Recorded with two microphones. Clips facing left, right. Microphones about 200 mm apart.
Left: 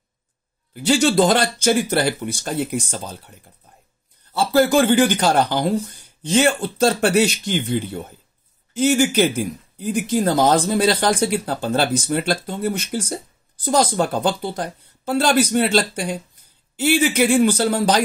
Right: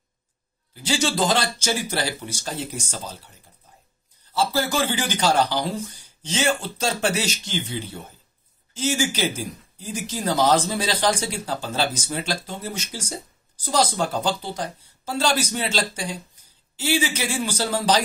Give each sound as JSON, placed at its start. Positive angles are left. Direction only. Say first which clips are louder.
{"t": 0.8, "sound": "speech", "louder": "left 7 dB", "side_deg": 60}